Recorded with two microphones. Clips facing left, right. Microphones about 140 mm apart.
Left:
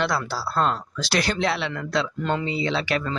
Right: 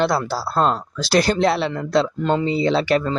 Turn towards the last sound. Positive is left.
turn(degrees=-40)  # may be behind; listen again after turning